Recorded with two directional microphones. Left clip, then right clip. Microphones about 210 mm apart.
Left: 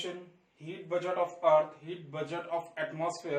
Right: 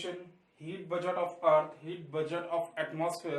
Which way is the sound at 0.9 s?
20° right (ahead or behind).